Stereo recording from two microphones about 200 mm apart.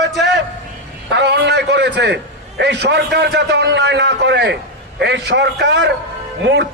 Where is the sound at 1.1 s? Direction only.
55° right (ahead or behind).